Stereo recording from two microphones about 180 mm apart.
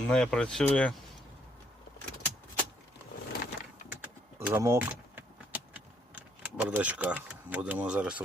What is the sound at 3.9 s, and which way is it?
Vehicle, 10° right (ahead or behind).